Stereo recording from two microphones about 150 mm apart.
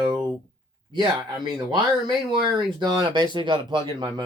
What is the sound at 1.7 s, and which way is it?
Speech, 30° right (ahead or behind).